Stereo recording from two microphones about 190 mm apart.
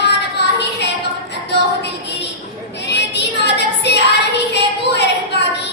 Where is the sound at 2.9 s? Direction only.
60° left (ahead or behind).